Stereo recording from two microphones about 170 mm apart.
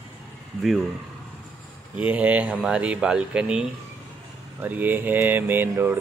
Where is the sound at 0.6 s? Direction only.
Centre (ahead or behind).